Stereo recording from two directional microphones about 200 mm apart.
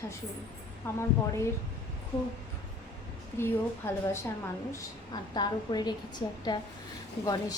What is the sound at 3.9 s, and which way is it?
Speech, 10° left (ahead or behind).